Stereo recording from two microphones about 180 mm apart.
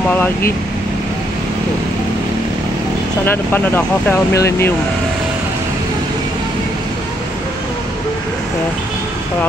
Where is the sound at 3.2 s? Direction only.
10° left (ahead or behind).